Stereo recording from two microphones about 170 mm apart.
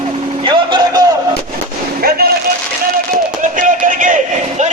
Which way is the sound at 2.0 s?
60° right (ahead or behind).